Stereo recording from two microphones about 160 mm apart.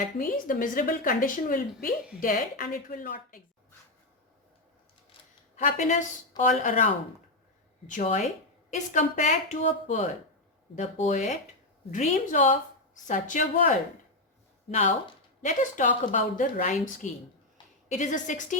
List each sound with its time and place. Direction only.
0.2 s a woman's voice: 60° left (ahead or behind)
5.5 s speech: 55° left (ahead or behind)
8.7 s speech: 50° left (ahead or behind)